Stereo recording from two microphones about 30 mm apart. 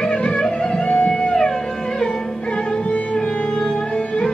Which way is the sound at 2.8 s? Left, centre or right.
Left.